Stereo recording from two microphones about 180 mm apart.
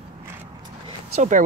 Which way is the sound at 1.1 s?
40° right (ahead or behind).